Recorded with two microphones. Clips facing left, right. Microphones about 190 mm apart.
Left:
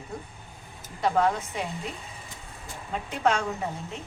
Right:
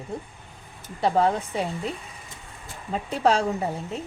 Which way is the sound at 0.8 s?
30° right (ahead or behind).